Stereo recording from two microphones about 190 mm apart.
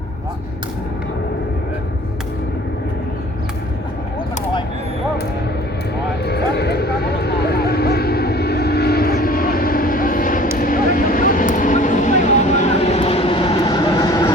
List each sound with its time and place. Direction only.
6.2 s vehicle: 60° left (ahead or behind); by 14.2 s 20° left (ahead or behind)